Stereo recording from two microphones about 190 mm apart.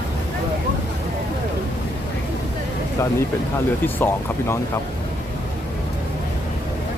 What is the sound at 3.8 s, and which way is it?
Speech, 10° left (ahead or behind).